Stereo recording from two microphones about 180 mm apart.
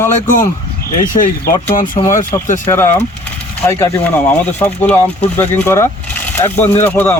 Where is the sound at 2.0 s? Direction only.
35° left (ahead or behind).